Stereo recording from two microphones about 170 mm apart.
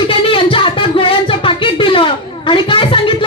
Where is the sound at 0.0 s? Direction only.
30° left (ahead or behind).